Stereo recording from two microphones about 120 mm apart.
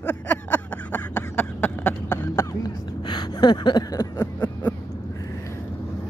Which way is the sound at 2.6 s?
35° left (ahead or behind).